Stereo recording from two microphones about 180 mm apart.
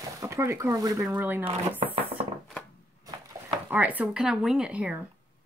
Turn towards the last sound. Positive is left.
turn(degrees=-5)  # may be behind; listen again after turning